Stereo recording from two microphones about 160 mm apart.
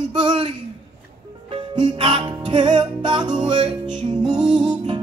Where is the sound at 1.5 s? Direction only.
35° right (ahead or behind).